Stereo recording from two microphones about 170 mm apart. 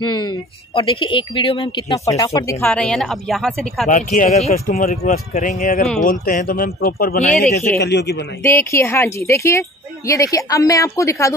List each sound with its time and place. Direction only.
0.0 s speech: 25° left (ahead or behind)
2.6 s a woman's voice: 5° left (ahead or behind)
3.9 s speech: 50° left (ahead or behind)
4.7 s speech: 50° left (ahead or behind)
7.8 s a man's voice: 80° left
8.4 s a woman's voice: 15° left (ahead or behind)